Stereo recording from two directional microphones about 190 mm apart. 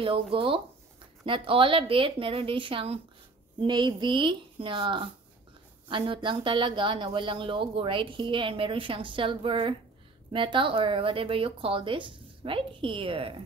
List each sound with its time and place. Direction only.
0.3 s speech: 30° right (ahead or behind)